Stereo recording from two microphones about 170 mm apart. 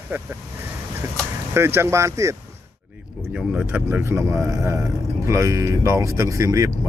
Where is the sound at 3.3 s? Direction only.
5° right (ahead or behind).